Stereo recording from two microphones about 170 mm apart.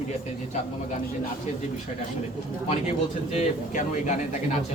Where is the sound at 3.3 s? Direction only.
45° left (ahead or behind).